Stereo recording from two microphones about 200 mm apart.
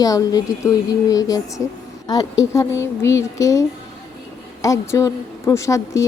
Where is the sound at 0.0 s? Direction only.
20° left (ahead or behind).